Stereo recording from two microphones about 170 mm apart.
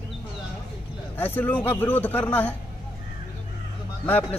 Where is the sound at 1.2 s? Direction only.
10° left (ahead or behind).